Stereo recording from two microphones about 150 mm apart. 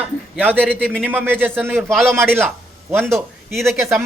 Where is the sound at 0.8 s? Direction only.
5° left (ahead or behind).